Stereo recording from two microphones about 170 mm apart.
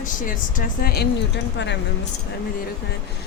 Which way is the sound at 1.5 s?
90° left.